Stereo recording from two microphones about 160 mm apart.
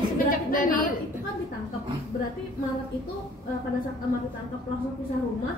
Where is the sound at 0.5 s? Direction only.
60° left (ahead or behind).